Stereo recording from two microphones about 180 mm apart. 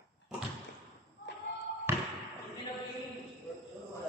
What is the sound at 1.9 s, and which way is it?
Basketball bounce, 10° right (ahead or behind).